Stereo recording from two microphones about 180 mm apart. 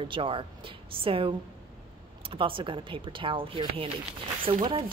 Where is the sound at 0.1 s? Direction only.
30° right (ahead or behind).